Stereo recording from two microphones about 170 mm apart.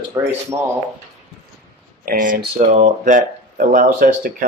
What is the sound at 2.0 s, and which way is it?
Speech, 55° right (ahead or behind).